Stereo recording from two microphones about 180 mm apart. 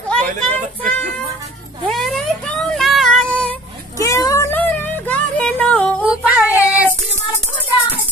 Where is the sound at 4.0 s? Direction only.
20° left (ahead or behind).